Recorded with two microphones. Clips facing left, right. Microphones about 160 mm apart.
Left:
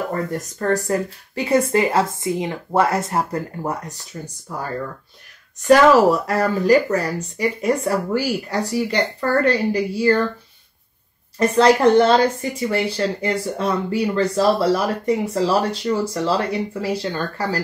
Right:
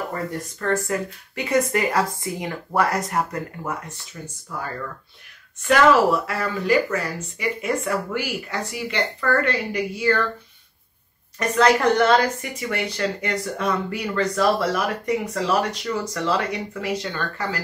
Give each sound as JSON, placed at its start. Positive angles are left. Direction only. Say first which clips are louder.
{"t": 0.1, "sound": "speech", "louder": "left 4 dB", "side_deg": 40}
{"t": 11.3, "sound": "speech", "louder": "left 4 dB", "side_deg": 30}